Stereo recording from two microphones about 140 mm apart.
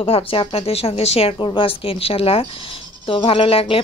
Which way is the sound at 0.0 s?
40° left (ahead or behind).